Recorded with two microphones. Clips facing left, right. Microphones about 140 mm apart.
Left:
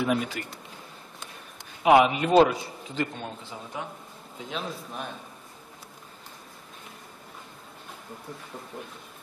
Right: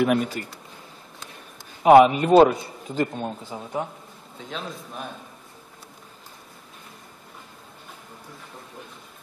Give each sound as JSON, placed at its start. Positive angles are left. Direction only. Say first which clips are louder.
{"t": 0.2, "sound": "speech", "louder": "right 4 dB", "side_deg": -40}
{"t": 1.8, "sound": "a man's voice", "louder": "right 6 dB", "side_deg": -40}
{"t": 4.5, "sound": "a man's voice", "louder": "even", "side_deg": 0}